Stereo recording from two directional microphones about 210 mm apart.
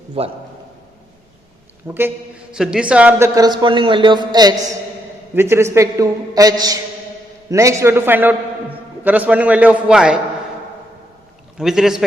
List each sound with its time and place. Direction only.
0.2 s a man's voice: 25° right (ahead or behind)
1.9 s a man's voice: 10° right (ahead or behind)
11.5 s a man's voice: centre (ahead or behind)